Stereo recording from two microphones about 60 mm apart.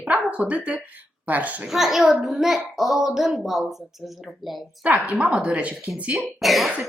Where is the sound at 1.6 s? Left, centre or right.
Centre.